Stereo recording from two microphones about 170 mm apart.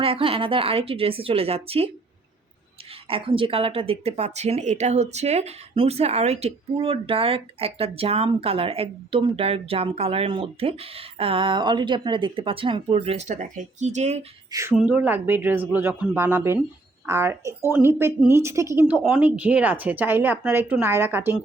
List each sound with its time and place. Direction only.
0.0 s speech: 30° right (ahead or behind)
3.1 s speech: 30° right (ahead or behind)
14.5 s speech: 15° right (ahead or behind)